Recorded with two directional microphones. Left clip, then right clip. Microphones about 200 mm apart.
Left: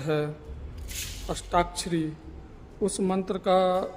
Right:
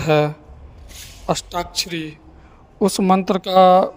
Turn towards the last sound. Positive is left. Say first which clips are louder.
# right 11 dB
turn(degrees=-45)  # may be behind; listen again after turning